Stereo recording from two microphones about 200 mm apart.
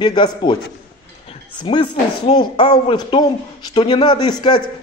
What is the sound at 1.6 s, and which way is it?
A man's voice, 25° left (ahead or behind).